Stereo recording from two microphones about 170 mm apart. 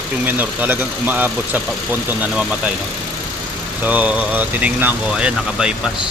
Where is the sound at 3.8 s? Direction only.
10° right (ahead or behind).